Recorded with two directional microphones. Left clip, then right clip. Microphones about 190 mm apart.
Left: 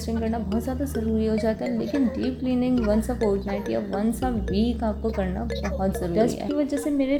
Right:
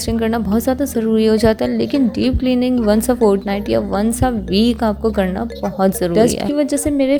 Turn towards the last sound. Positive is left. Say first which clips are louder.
# right 8 dB
turn(degrees=-35)  # may be behind; listen again after turning